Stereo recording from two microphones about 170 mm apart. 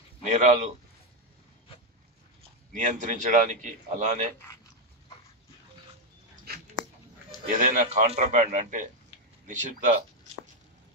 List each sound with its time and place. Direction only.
0.3 s a man's voice: 45° right (ahead or behind)
2.7 s a man's voice: 45° right (ahead or behind)
6.7 s a sound: centre (ahead or behind)
7.5 s a man's voice: 50° right (ahead or behind)